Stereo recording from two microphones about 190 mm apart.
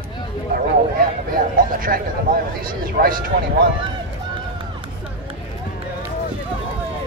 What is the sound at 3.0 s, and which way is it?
Speech, 50° right (ahead or behind).